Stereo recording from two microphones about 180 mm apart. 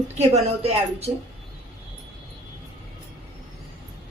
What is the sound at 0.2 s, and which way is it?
Speech, 35° right (ahead or behind).